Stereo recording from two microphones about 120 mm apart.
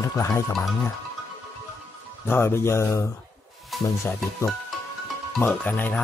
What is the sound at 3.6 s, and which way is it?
Music, centre (ahead or behind).